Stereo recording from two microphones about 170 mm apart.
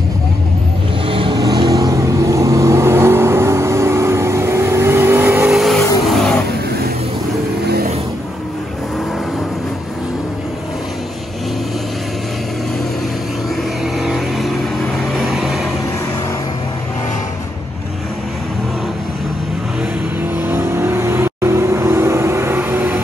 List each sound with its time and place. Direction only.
1.0 s vehicle: 30° right (ahead or behind); by 5.5 s 15° right (ahead or behind)
5.5 s vehicle: centre (ahead or behind)
7.6 s music: 65° right (ahead or behind)
13.9 s vehicle: centre (ahead or behind)
20.2 s vehicle: 10° right (ahead or behind)